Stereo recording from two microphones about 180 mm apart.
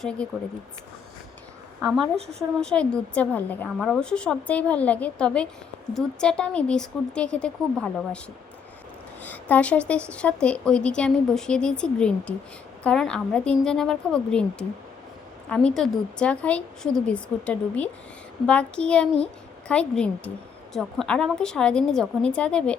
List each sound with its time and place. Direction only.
0.0 s a woman's voice: 5° left (ahead or behind)
2.0 s speech: 35° right (ahead or behind)
2.6 s a woman's voice: 5° left (ahead or behind)
9.2 s a woman's voice: 10° left (ahead or behind)
15.4 s a woman's voice: 5° left (ahead or behind)